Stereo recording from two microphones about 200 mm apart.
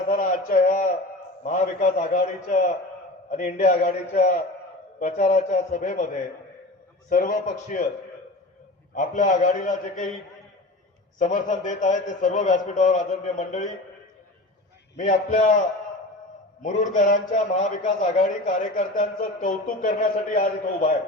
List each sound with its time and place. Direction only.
0.1 s a sound: 40° left (ahead or behind)
1.5 s speech: 40° left (ahead or behind)
7.1 s speech: 40° left (ahead or behind)
9.0 s speech: 40° left (ahead or behind)
11.2 s speech: 40° left (ahead or behind)
14.9 s speech: 40° left (ahead or behind)
16.6 s speech: 40° left (ahead or behind)